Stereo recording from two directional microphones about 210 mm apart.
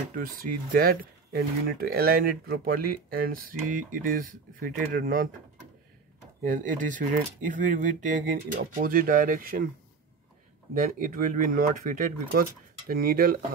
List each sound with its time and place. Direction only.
0.1 s speech: 40° right (ahead or behind)
6.4 s speech: 40° right (ahead or behind)
10.7 s speech: 40° right (ahead or behind)